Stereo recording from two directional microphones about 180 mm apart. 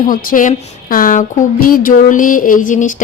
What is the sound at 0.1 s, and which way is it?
A woman's voice, 50° left (ahead or behind).